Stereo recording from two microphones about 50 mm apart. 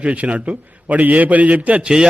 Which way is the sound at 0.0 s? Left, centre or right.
Right.